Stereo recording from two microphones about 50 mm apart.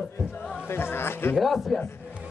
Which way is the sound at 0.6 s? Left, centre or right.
Left.